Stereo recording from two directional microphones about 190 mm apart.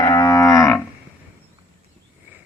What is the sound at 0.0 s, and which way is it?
Livestock, 20° left (ahead or behind).